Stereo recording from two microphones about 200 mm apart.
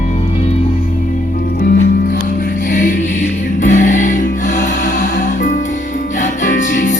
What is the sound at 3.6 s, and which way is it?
Music, 40° left (ahead or behind).